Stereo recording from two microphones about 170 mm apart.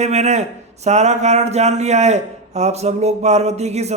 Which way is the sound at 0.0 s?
40° right (ahead or behind).